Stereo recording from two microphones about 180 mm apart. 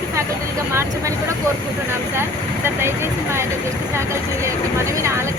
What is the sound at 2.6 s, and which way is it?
Speech, 15° right (ahead or behind).